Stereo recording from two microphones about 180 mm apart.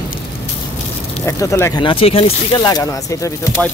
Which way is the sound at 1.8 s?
30° left (ahead or behind).